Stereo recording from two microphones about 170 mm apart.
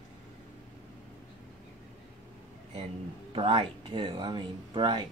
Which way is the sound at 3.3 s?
30° right (ahead or behind).